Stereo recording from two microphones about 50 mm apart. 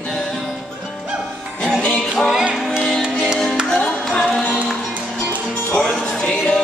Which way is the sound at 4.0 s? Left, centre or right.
Centre.